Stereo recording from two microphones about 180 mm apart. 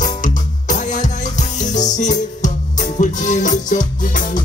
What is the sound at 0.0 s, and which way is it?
Music, 45° left (ahead or behind).